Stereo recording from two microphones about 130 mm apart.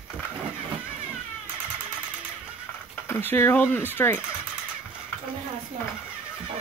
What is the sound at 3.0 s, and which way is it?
Speech, 20° left (ahead or behind).